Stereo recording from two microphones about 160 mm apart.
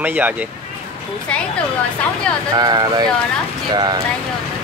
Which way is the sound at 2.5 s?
25° right (ahead or behind).